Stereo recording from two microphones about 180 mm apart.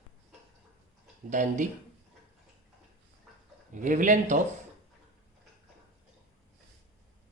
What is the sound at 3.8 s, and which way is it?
Speech, 45° right (ahead or behind).